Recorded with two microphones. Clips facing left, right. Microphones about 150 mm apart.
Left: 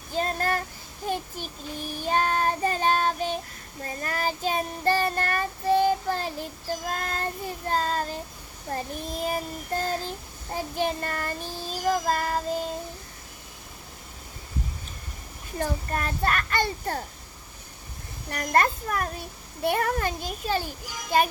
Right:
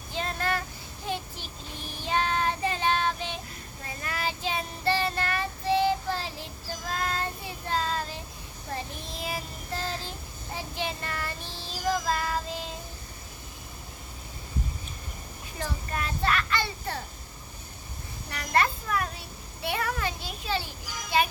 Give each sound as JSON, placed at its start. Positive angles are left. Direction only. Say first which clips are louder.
{"t": 0.1, "sound": "speech", "louder": "left 4 dB", "side_deg": 40}
{"t": 1.0, "sound": "child singing", "louder": "left 4 dB", "side_deg": 45}
{"t": 15.5, "sound": "child singing", "louder": "left 5 dB", "side_deg": 45}
{"t": 18.3, "sound": "child singing", "louder": "left 3 dB", "side_deg": 45}